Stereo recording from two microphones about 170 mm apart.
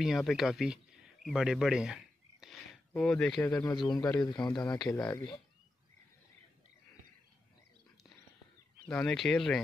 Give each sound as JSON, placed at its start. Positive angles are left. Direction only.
{"t": 0.0, "sound": "speech", "side_deg": 0}
{"t": 2.4, "sound": "a sound", "side_deg": 5}
{"t": 3.4, "sound": "speech", "side_deg": 15}
{"t": 3.7, "sound": "a man's voice", "side_deg": 25}
{"t": 8.8, "sound": "speech", "side_deg": 5}